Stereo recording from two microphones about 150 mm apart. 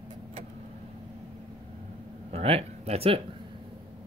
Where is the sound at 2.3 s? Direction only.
40° right (ahead or behind).